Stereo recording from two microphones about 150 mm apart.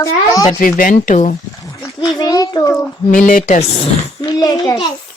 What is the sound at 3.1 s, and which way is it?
Speech, 65° left (ahead or behind).